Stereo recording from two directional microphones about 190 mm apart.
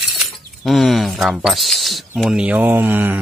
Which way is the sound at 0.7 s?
Centre (ahead or behind).